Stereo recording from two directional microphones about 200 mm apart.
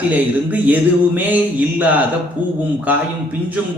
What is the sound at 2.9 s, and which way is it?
Speech, 10° right (ahead or behind).